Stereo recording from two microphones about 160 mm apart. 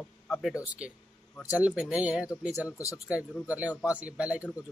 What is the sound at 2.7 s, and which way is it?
Speech, 20° left (ahead or behind).